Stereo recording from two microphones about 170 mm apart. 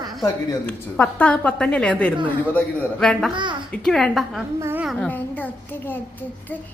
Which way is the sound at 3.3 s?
25° right (ahead or behind).